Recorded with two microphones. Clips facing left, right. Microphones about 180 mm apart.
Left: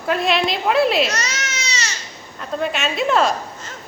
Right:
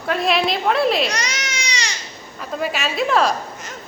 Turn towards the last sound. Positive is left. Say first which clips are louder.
# even
turn(degrees=0)  # may be behind; listen again after turning